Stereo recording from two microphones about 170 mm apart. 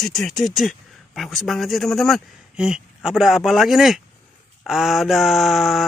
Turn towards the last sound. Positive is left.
turn(degrees=0)  # may be behind; listen again after turning